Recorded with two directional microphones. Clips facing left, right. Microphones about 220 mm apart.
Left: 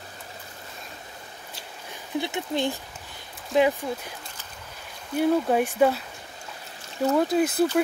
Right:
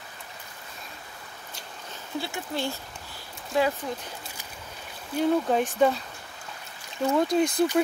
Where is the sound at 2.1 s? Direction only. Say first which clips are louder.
Left 4 dB; 20° left (ahead or behind).